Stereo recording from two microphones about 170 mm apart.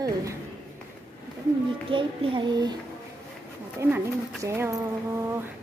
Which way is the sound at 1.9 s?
30° right (ahead or behind).